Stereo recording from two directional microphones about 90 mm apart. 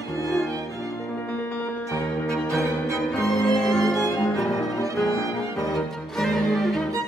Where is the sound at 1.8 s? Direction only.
35° left (ahead or behind).